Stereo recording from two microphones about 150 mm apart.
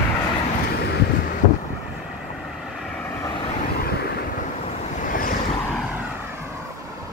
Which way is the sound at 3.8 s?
90° left.